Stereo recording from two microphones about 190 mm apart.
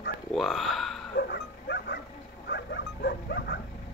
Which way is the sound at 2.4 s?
60° left (ahead or behind).